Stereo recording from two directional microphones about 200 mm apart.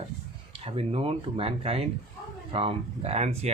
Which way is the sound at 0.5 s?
30° right (ahead or behind).